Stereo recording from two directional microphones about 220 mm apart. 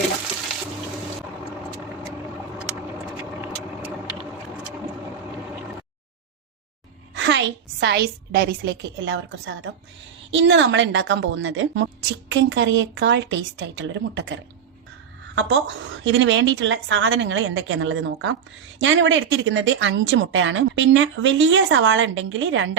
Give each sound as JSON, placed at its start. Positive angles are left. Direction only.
{"t": 3.4, "sound": "vehicle", "side_deg": -5}
{"t": 7.2, "sound": "a woman's voice", "side_deg": -55}
{"t": 15.4, "sound": "a woman's voice", "side_deg": -60}